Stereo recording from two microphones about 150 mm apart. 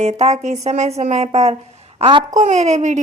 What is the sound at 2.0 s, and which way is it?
Speech, 35° right (ahead or behind).